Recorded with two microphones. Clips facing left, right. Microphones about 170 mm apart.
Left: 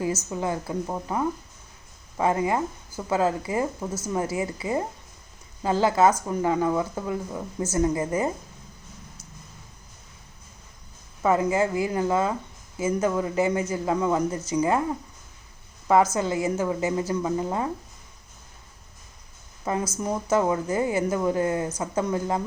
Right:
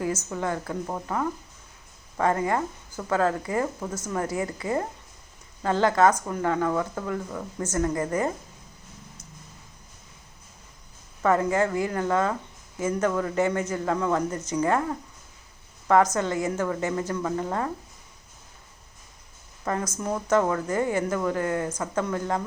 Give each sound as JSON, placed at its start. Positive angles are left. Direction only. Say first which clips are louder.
{"t": 0.3, "sound": "speech", "louder": "left 1 dB", "side_deg": 15}
{"t": 11.2, "sound": "speech", "louder": "even", "side_deg": 15}
{"t": 19.6, "sound": "speech", "louder": "left 1 dB", "side_deg": 10}